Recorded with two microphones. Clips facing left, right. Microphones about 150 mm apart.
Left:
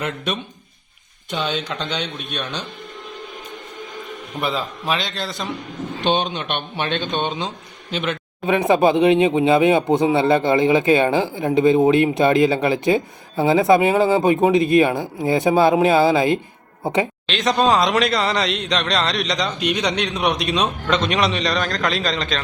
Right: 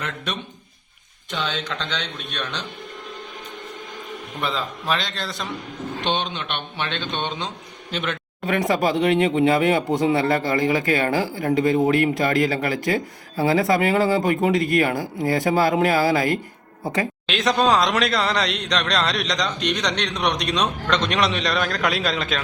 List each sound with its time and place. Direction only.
1.3 s speech: 10° left (ahead or behind)
4.4 s speech: 10° left (ahead or behind)
6.1 s speech: 10° left (ahead or behind)
8.7 s speech: 25° left (ahead or behind)
17.2 s speech: centre (ahead or behind)